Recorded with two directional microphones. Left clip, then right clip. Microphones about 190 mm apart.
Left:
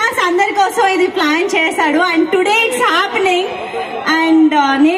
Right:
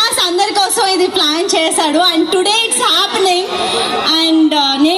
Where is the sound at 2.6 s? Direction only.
40° right (ahead or behind).